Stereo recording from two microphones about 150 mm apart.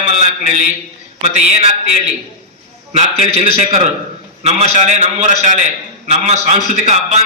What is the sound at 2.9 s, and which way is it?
A man's voice, 45° right (ahead or behind).